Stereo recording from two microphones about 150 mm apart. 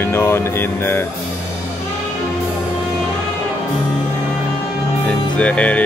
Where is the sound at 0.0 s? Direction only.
15° left (ahead or behind).